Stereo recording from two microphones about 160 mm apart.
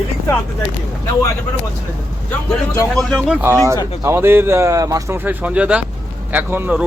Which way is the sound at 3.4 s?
15° right (ahead or behind).